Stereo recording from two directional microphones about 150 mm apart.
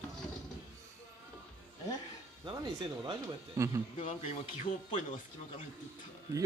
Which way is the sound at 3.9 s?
50° left (ahead or behind).